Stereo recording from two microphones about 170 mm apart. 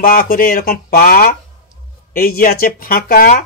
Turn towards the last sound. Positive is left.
turn(degrees=60)  # may be behind; listen again after turning